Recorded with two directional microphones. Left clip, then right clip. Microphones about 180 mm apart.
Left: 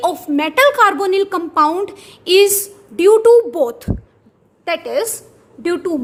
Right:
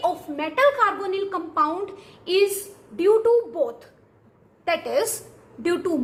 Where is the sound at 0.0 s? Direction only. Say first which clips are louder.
Left 8 dB; 70° left (ahead or behind).